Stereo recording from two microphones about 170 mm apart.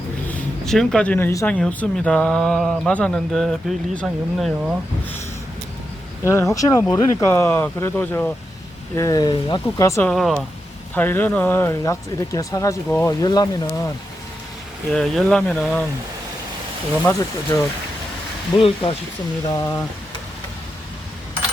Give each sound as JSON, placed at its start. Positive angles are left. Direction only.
{"t": 0.3, "sound": "speech", "side_deg": 5}
{"t": 6.2, "sound": "speech", "side_deg": 15}
{"t": 9.0, "sound": "speech", "side_deg": 20}
{"t": 10.1, "sound": "speech", "side_deg": 0}
{"t": 10.9, "sound": "speech", "side_deg": 10}
{"t": 14.9, "sound": "speech", "side_deg": 5}
{"t": 17.5, "sound": "speech", "side_deg": 15}
{"t": 18.5, "sound": "speech", "side_deg": 30}
{"t": 19.5, "sound": "speech", "side_deg": 20}